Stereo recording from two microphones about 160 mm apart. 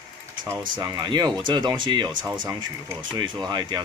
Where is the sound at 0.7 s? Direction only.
30° right (ahead or behind).